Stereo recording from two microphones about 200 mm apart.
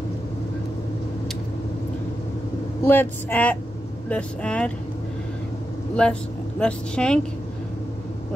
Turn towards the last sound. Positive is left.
turn(degrees=5)  # may be behind; listen again after turning